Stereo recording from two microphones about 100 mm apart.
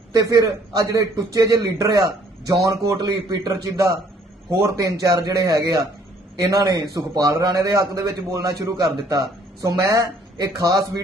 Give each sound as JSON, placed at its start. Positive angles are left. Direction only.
{"t": 0.1, "sound": "a man's voice", "side_deg": -35}